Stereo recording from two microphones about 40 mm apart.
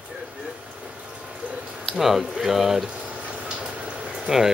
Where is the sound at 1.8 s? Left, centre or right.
Centre.